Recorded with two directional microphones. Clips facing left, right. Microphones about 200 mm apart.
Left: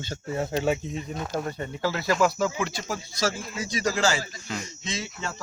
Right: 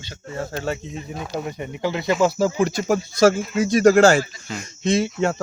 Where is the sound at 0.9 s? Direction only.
Centre (ahead or behind).